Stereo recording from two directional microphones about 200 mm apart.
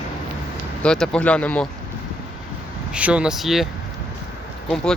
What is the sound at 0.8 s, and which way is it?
Speech, 5° left (ahead or behind).